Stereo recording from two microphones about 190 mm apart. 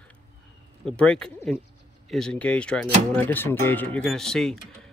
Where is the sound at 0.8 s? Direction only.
5° left (ahead or behind).